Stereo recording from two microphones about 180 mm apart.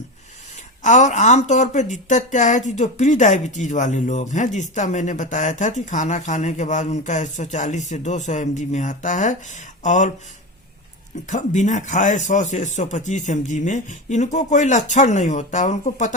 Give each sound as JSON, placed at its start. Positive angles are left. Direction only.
{"t": 0.9, "sound": "a woman's voice", "side_deg": 40}
{"t": 11.3, "sound": "speech", "side_deg": 45}